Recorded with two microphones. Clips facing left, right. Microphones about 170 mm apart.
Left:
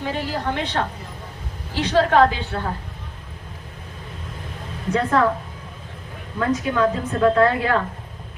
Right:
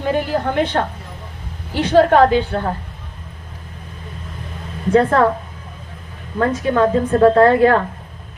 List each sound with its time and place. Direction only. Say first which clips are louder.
0.1 s a woman's voice: right 8 dB; 50° right (ahead or behind)
4.9 s a woman's voice: right 6 dB; 50° right (ahead or behind)
6.4 s a woman's voice: right 4 dB; 45° right (ahead or behind)